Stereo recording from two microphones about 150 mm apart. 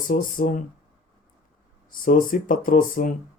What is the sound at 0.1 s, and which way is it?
Speech, 65° left (ahead or behind).